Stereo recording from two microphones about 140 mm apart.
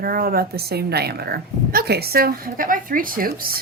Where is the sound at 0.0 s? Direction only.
90° right.